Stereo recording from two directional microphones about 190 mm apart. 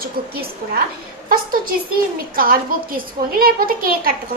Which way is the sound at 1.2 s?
50° right (ahead or behind).